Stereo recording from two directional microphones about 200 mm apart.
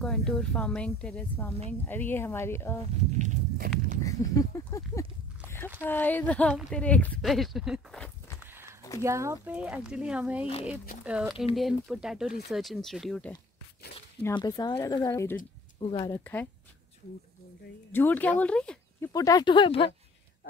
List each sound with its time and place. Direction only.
0.0 s a woman's voice: 5° left (ahead or behind)
3.2 s walk: 45° right (ahead or behind)
4.0 s a woman's voice: 15° left (ahead or behind); by 8.1 s centre (ahead or behind)
9.0 s speech: 15° right (ahead or behind)
14.2 s a woman's voice: 20° left (ahead or behind)
15.8 s speech: 25° left (ahead or behind)
16.1 s a woman's voice: 10° left (ahead or behind)
17.9 s speech: 10° left (ahead or behind)
19.1 s speech: 20° left (ahead or behind)